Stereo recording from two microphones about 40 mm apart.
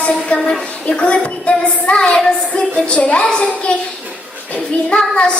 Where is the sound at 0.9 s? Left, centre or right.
Left.